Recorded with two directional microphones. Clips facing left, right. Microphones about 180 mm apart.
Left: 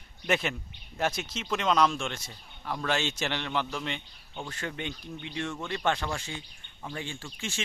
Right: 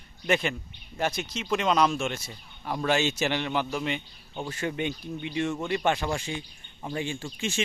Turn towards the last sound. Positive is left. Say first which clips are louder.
# right 6 dB
turn(degrees=-15)  # may be behind; listen again after turning